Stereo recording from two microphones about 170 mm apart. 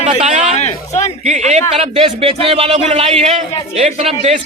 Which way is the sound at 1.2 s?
40° right (ahead or behind).